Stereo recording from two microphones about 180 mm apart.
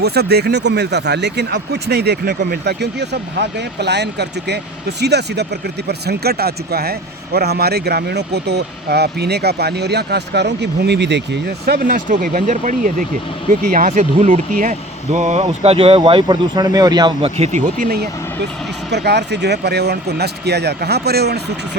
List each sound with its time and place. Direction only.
0.0 s speech: 65° right (ahead or behind)
18.9 s speech: 70° right (ahead or behind)